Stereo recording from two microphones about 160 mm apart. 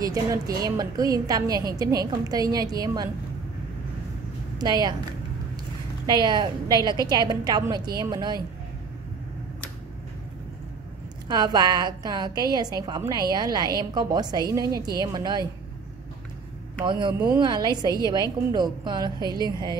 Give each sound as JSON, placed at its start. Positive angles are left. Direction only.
{"t": 0.0, "sound": "a woman's voice", "side_deg": -20}
{"t": 4.6, "sound": "a woman's voice", "side_deg": -25}
{"t": 6.0, "sound": "a woman's voice", "side_deg": -25}
{"t": 11.2, "sound": "a woman's voice", "side_deg": -25}
{"t": 16.8, "sound": "a woman's voice", "side_deg": -30}